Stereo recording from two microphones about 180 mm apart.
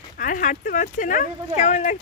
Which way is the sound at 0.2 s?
45° left (ahead or behind).